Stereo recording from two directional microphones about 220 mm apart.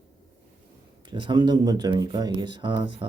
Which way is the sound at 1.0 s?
20° right (ahead or behind).